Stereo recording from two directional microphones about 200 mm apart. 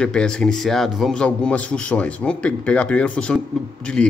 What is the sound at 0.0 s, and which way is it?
A man's voice, 5° left (ahead or behind).